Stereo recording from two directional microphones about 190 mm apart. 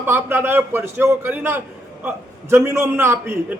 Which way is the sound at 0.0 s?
10° right (ahead or behind).